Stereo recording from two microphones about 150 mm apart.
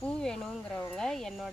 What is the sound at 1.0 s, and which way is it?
Speech, 5° left (ahead or behind).